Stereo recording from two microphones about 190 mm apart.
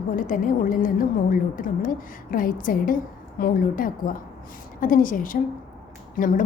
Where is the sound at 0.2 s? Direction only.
45° left (ahead or behind).